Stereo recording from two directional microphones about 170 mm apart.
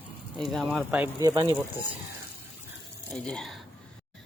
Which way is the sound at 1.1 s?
25° right (ahead or behind).